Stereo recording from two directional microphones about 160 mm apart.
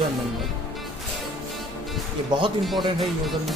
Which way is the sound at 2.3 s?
30° right (ahead or behind).